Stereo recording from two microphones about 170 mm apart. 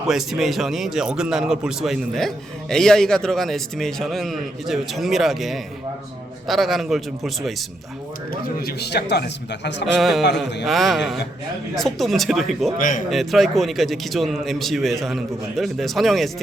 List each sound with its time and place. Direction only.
0.1 s a man's voice: centre (ahead or behind)
8.3 s a man's voice: 60° left (ahead or behind); by 9.8 s 90° left
9.8 s a man's voice: centre (ahead or behind)